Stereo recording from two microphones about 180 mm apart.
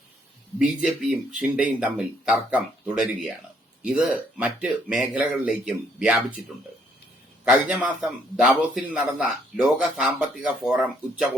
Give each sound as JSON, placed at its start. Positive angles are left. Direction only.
{"t": 0.6, "sound": "a man's voice", "side_deg": -5}
{"t": 4.4, "sound": "a man's voice", "side_deg": -5}